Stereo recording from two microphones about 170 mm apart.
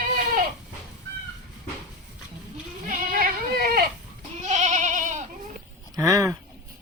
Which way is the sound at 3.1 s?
55° right (ahead or behind).